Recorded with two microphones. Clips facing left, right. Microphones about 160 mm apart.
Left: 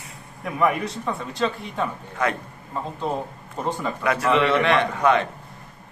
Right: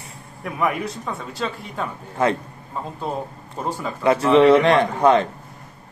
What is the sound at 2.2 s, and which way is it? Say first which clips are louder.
Speech: right 4 dB; 30° right (ahead or behind).